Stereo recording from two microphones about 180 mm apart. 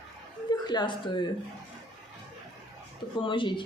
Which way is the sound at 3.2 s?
25° left (ahead or behind).